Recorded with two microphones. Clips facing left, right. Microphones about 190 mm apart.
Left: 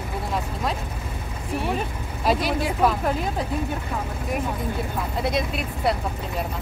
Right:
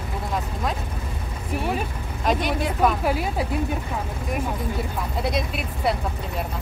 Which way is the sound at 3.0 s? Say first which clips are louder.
Right 1 dB; 10° right (ahead or behind).